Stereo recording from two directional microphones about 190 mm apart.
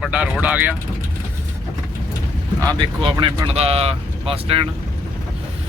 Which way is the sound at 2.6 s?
20° right (ahead or behind).